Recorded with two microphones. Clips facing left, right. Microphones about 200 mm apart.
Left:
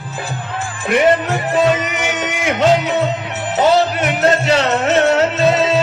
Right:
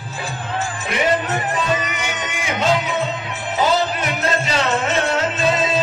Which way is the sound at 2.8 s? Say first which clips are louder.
Left 5 dB; 70° left (ahead or behind).